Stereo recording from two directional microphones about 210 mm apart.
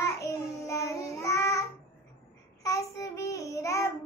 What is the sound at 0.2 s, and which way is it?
Child singing, 15° left (ahead or behind).